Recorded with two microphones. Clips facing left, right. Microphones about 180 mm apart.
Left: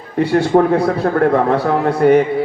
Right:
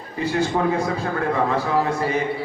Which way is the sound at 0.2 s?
70° left (ahead or behind).